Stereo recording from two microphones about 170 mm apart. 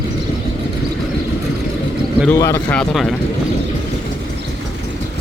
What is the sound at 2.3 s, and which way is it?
Speech, 15° left (ahead or behind).